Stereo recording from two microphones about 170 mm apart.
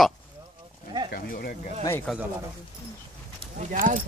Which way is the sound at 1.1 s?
60° left (ahead or behind).